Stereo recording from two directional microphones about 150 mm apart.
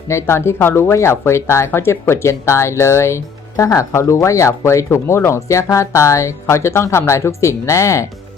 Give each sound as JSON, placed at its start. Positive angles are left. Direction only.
{"t": 0.1, "sound": "speech", "side_deg": 20}